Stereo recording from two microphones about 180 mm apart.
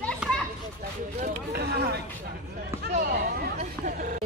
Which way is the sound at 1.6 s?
65° right (ahead or behind).